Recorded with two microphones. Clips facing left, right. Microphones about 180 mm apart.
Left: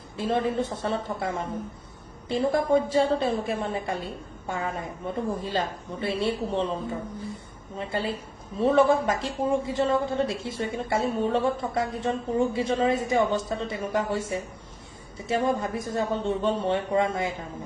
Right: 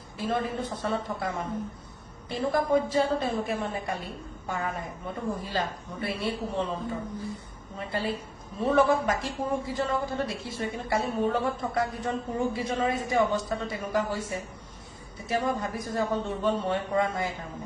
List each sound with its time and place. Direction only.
0.2 s a woman's voice: 25° left (ahead or behind)
7.8 s a woman's voice: 25° left (ahead or behind)